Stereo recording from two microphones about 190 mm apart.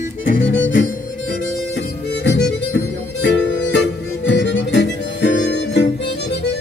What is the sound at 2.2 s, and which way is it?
Harmonica, 60° left (ahead or behind).